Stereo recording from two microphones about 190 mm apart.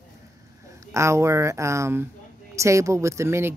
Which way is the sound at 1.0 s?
15° right (ahead or behind).